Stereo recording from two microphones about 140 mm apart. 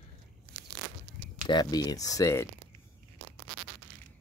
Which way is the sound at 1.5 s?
30° left (ahead or behind).